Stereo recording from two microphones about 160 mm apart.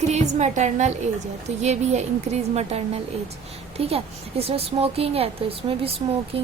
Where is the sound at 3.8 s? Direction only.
40° right (ahead or behind).